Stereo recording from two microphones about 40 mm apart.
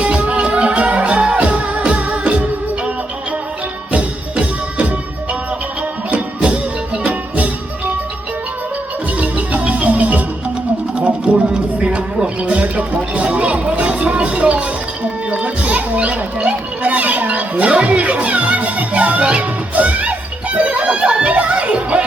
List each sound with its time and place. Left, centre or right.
0.0 s music: right
3.9 s music: right
6.4 s music: right
9.1 s music: right
11.3 s a sound: right
12.2 s music: right
12.5 s music: right